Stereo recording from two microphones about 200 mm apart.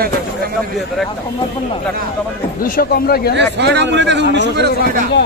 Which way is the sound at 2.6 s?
50° left (ahead or behind).